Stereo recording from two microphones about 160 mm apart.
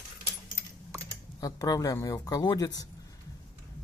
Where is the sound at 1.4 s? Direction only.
20° left (ahead or behind).